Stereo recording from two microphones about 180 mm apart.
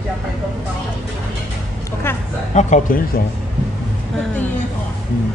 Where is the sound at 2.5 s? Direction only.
40° left (ahead or behind).